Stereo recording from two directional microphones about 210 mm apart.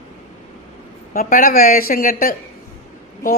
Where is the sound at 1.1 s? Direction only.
40° left (ahead or behind).